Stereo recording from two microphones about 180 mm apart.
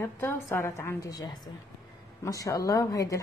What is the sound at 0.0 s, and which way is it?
A woman's voice, 15° left (ahead or behind).